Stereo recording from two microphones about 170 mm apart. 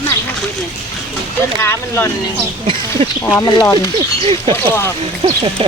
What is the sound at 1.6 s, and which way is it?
Speech, 15° left (ahead or behind).